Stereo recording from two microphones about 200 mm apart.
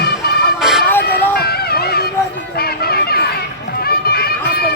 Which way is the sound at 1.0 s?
50° left (ahead or behind).